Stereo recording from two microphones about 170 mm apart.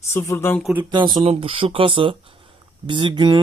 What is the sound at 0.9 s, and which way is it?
Speech, 25° right (ahead or behind).